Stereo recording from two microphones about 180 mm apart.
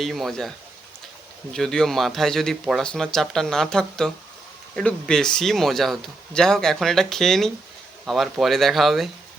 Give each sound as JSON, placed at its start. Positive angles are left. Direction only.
{"t": 0.0, "sound": "a man's voice", "side_deg": 0}
{"t": 1.5, "sound": "a man's voice", "side_deg": 5}